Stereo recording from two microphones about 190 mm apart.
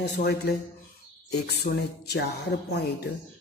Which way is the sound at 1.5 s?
60° left (ahead or behind).